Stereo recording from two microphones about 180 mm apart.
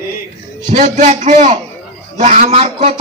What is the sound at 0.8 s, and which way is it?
A man's voice, 40° right (ahead or behind).